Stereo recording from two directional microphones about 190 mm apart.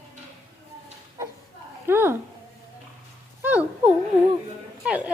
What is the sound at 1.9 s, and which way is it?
Speech, 10° right (ahead or behind).